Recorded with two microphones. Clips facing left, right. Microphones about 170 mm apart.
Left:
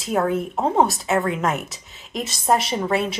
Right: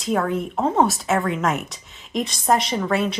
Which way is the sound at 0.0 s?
5° left (ahead or behind).